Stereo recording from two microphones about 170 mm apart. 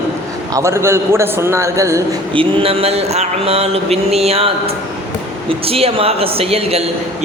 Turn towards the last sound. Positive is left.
turn(degrees=-35)  # may be behind; listen again after turning